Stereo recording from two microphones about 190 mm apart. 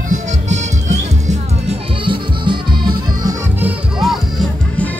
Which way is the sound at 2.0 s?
25° right (ahead or behind).